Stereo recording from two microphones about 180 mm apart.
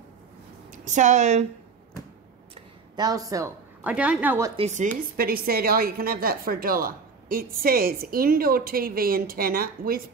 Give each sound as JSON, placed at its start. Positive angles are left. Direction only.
{"t": 0.7, "sound": "a woman's voice", "side_deg": -45}
{"t": 3.0, "sound": "a woman's voice", "side_deg": -20}
{"t": 4.6, "sound": "speech", "side_deg": -40}
{"t": 5.1, "sound": "a woman's voice", "side_deg": -55}